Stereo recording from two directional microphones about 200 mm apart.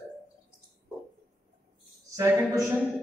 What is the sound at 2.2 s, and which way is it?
Speech, 15° right (ahead or behind).